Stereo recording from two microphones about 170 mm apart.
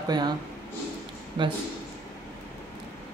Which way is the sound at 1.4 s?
30° right (ahead or behind).